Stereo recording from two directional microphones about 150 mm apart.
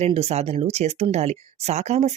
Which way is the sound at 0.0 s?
45° right (ahead or behind).